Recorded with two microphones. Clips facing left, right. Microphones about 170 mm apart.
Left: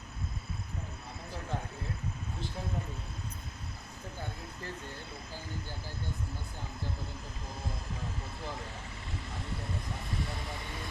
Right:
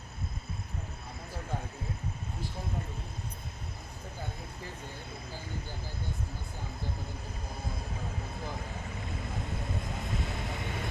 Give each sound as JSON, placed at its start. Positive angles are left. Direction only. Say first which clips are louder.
{"t": 10.4, "sound": "speech", "louder": "right 4 dB", "side_deg": -55}